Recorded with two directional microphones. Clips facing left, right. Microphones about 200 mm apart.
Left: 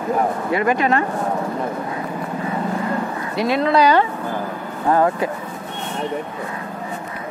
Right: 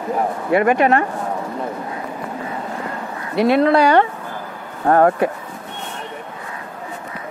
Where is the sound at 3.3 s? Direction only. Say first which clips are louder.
Right 4 dB; 60° right (ahead or behind).